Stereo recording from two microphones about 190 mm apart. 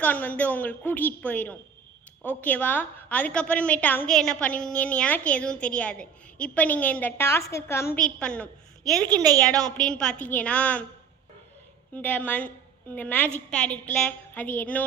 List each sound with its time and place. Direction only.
0.0 s a woman's voice: 10° left (ahead or behind)
9.0 s a woman's voice: 20° right (ahead or behind)
9.5 s a woman's voice: 5° left (ahead or behind)
11.9 s a woman's voice: 5° left (ahead or behind)